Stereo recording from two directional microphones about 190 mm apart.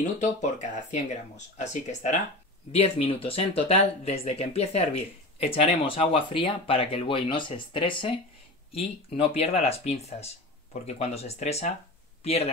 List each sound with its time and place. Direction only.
0.2 s speech: 40° left (ahead or behind)